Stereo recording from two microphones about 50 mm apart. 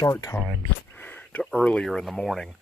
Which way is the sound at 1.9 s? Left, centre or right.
Centre.